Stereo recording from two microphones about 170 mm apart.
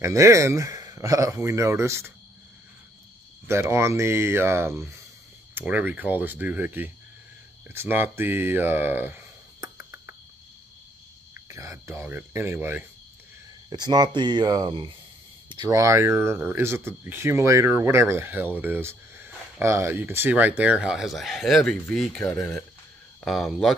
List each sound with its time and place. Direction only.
0.0 s speech: 15° right (ahead or behind)
3.4 s speech: 15° right (ahead or behind)
11.3 s speech: 20° right (ahead or behind)
13.7 s speech: 25° right (ahead or behind); by 22.5 s 10° left (ahead or behind)
23.2 s speech: centre (ahead or behind)